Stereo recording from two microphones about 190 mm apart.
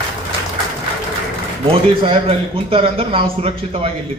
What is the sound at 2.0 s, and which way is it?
A man's voice, 30° right (ahead or behind).